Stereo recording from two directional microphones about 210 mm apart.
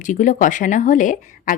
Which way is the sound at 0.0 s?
35° left (ahead or behind).